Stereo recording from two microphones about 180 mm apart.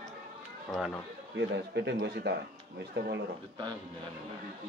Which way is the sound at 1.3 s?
75° right (ahead or behind).